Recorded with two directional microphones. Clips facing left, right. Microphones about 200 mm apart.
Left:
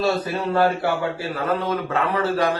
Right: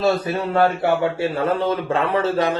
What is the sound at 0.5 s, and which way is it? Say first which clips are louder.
Speech: right 2 dB; 25° right (ahead or behind).